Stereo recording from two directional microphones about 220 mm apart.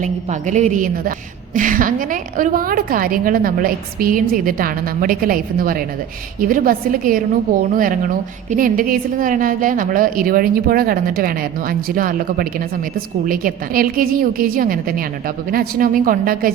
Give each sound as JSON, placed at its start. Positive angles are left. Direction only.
{"t": 0.0, "sound": "a woman's voice", "side_deg": -35}